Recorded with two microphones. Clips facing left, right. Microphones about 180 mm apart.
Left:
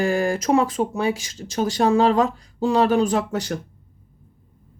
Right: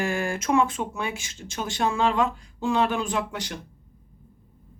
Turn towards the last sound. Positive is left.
turn(degrees=45)  # may be behind; listen again after turning